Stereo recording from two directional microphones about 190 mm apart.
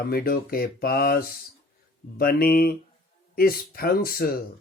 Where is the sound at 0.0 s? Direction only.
50° left (ahead or behind).